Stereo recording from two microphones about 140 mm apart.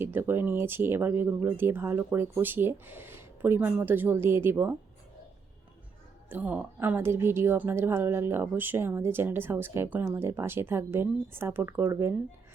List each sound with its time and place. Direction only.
0.0 s a woman's voice: 15° right (ahead or behind)
6.2 s a woman's voice: 10° right (ahead or behind)